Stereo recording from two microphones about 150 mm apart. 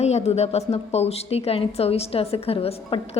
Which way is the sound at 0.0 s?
45° left (ahead or behind).